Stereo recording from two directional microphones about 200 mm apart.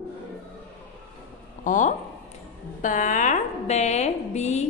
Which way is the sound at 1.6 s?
40° left (ahead or behind).